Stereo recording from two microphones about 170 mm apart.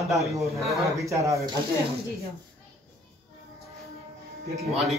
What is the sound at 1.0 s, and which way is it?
Speech, 20° right (ahead or behind).